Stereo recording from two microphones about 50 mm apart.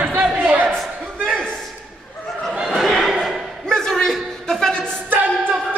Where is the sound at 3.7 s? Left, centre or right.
Centre.